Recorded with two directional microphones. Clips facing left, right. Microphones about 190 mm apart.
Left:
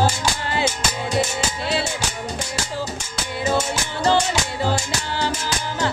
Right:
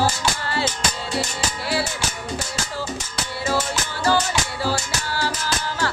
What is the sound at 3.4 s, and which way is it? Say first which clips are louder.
Music: left 2 dB; 20° left (ahead or behind).